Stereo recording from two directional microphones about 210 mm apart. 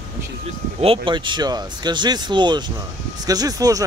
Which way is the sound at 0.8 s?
25° right (ahead or behind).